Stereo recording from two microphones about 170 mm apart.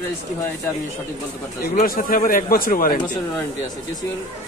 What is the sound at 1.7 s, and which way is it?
Speech, 55° left (ahead or behind).